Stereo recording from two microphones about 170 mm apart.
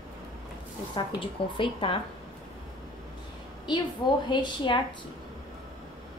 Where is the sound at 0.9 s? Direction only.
30° left (ahead or behind).